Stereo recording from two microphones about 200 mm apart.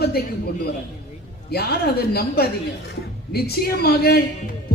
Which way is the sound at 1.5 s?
50° left (ahead or behind).